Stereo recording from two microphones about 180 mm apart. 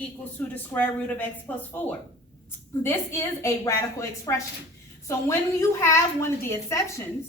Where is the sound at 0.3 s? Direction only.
10° left (ahead or behind).